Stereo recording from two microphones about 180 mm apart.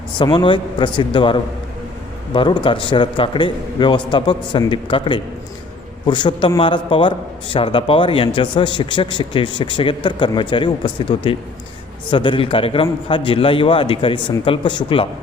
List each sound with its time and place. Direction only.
0.2 s a man's voice: 25° left (ahead or behind)